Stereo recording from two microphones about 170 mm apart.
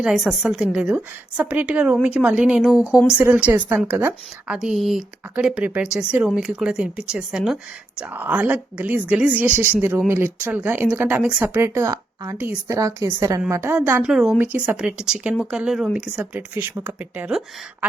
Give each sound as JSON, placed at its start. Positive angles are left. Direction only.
{"t": 0.0, "sound": "speech", "side_deg": 0}